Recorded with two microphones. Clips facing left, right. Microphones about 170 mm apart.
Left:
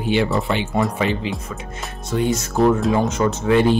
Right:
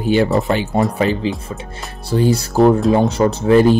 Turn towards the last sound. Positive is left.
turn(degrees=-35)  # may be behind; listen again after turning